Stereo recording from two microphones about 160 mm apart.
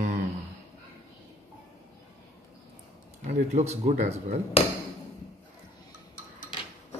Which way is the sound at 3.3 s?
40° right (ahead or behind).